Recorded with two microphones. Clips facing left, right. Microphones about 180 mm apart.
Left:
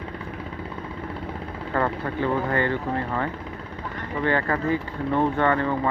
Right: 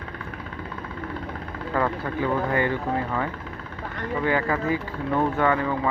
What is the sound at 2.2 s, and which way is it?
Speech, 10° right (ahead or behind).